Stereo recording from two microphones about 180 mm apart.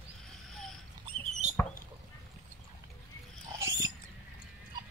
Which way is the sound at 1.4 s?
40° right (ahead or behind).